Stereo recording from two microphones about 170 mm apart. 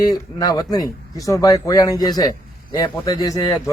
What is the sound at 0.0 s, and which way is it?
Speech, 20° left (ahead or behind).